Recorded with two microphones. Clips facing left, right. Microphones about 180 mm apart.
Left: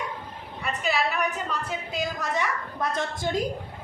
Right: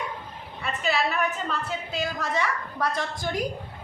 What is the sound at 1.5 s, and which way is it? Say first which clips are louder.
A woman's voice: right 1 dB; 15° left (ahead or behind).